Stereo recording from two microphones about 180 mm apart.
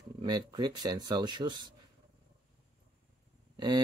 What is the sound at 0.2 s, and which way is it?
Speech, 25° right (ahead or behind).